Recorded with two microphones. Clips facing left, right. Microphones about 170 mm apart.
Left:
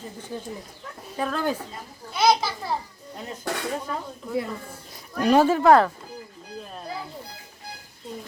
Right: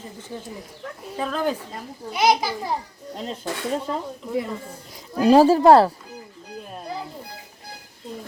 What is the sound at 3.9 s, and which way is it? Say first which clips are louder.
Speech: right 4 dB; 25° right (ahead or behind).